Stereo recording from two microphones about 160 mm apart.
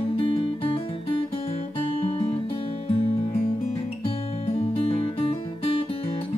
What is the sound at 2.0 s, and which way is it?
Guitar, 35° left (ahead or behind).